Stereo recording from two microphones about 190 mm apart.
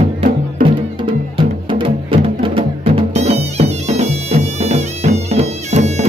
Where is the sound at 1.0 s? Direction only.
25° right (ahead or behind).